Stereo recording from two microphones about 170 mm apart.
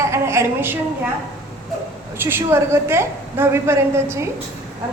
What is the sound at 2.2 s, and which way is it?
A woman's voice, 15° right (ahead or behind).